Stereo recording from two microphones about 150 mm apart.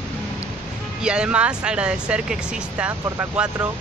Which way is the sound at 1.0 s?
5° right (ahead or behind).